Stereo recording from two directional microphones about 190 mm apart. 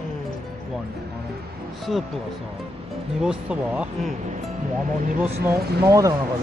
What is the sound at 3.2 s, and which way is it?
Speech, 5° right (ahead or behind).